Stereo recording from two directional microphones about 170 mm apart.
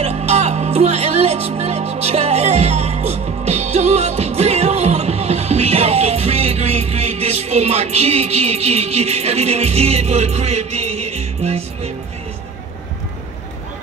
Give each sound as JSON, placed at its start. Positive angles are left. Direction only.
{"t": 0.0, "sound": "music", "side_deg": -40}